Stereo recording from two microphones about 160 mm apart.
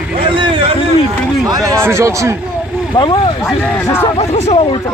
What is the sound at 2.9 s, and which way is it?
Speech, 30° left (ahead or behind).